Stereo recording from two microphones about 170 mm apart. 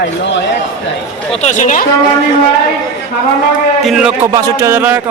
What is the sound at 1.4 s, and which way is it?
Speech, 45° left (ahead or behind).